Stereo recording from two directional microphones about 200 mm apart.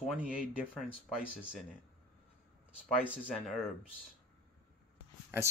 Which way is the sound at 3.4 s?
Centre (ahead or behind).